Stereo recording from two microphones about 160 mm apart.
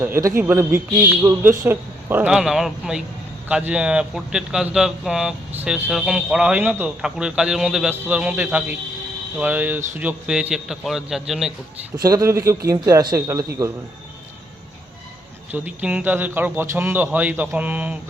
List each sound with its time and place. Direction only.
0.0 s a man's voice: 15° right (ahead or behind)
12.0 s a man's voice: 20° right (ahead or behind)
15.5 s speech: 10° right (ahead or behind)